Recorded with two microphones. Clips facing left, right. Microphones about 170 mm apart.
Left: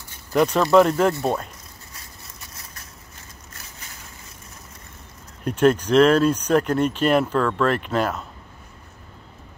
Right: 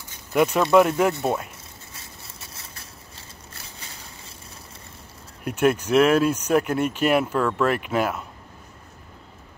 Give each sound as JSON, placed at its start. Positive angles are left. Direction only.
{"t": 0.3, "sound": "speech", "side_deg": -5}
{"t": 2.0, "sound": "a sound", "side_deg": -25}
{"t": 5.4, "sound": "speech", "side_deg": -10}